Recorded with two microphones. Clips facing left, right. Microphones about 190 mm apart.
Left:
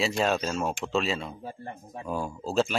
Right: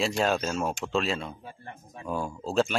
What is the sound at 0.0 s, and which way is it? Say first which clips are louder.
Speech: even; centre (ahead or behind).